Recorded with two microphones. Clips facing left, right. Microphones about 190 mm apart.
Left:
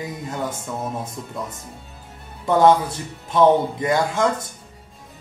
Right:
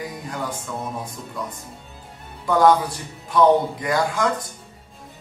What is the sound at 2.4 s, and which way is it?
A man's voice, 25° left (ahead or behind).